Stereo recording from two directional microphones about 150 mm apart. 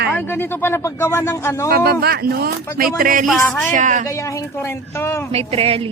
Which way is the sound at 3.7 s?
55° right (ahead or behind).